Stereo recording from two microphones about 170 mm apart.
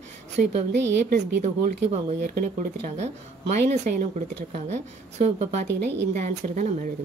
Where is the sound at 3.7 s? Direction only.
45° right (ahead or behind).